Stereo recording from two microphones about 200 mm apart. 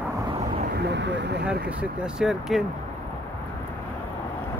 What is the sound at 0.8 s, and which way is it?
Vehicle, 60° right (ahead or behind).